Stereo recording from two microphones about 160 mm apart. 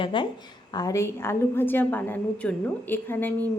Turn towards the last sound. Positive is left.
turn(degrees=10)  # may be behind; listen again after turning